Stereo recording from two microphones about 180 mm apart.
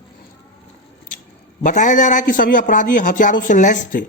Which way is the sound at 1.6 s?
45° left (ahead or behind).